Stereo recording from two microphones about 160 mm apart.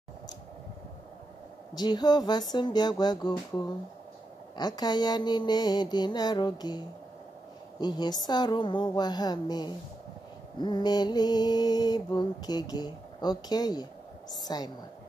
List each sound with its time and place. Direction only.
1.8 s mantra: 25° left (ahead or behind)
7.8 s mantra: 25° left (ahead or behind)